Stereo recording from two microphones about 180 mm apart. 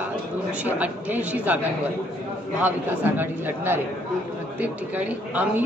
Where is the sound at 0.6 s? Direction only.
10° right (ahead or behind).